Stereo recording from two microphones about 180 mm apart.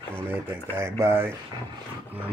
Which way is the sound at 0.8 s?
15° right (ahead or behind).